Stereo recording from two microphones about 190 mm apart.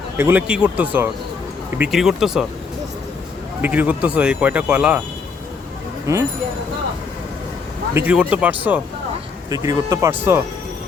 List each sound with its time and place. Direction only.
0.2 s speech: 10° right (ahead or behind)
3.6 s speech: 10° right (ahead or behind)
7.9 s speech: 10° right (ahead or behind)
9.5 s speech: 20° right (ahead or behind)